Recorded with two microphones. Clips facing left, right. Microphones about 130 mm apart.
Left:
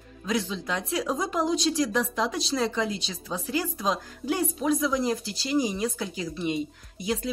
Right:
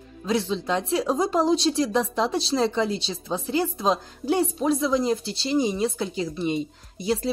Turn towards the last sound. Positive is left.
turn(degrees=-30)  # may be behind; listen again after turning